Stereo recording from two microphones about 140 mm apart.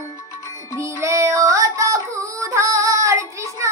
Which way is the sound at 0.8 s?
20° right (ahead or behind).